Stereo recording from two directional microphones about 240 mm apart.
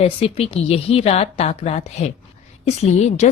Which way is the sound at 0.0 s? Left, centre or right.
Left.